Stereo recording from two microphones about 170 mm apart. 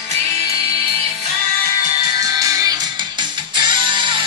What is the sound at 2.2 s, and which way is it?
Music, 20° right (ahead or behind).